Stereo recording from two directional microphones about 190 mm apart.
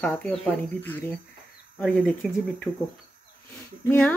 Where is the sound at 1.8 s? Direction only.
5° left (ahead or behind).